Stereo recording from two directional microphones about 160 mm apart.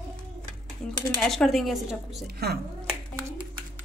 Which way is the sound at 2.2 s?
80° right.